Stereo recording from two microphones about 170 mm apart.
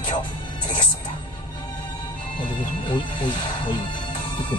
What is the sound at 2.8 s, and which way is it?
Speech, 30° left (ahead or behind).